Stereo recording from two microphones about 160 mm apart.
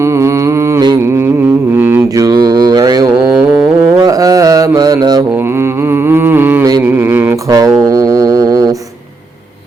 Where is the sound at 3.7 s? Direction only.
20° right (ahead or behind).